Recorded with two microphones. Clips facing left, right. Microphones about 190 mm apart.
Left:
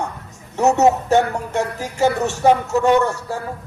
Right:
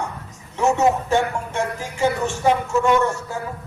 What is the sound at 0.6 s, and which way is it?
A man's voice, 40° left (ahead or behind).